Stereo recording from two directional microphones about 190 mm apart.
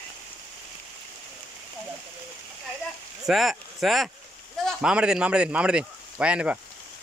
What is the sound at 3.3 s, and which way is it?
Speech, centre (ahead or behind).